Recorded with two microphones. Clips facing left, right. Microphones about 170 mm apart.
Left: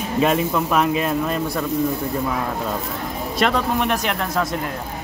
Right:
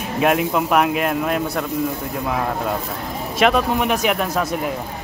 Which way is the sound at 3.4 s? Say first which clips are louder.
Right 3 dB; 5° right (ahead or behind).